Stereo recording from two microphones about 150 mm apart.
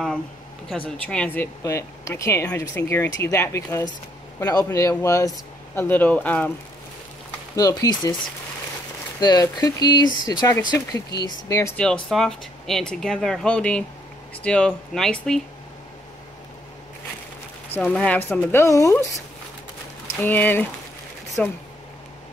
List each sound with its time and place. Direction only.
0.7 s speech: 5° left (ahead or behind)
7.5 s speech: 25° left (ahead or behind)
9.2 s speech: 25° left (ahead or behind)
11.7 s speech: 5° left (ahead or behind)
17.7 s speech: 10° left (ahead or behind)